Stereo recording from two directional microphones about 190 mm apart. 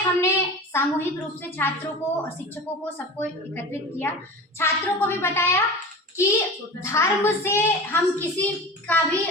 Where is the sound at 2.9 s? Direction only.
10° left (ahead or behind).